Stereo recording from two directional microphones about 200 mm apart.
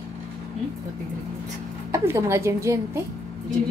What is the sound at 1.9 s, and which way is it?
Speech, 15° right (ahead or behind).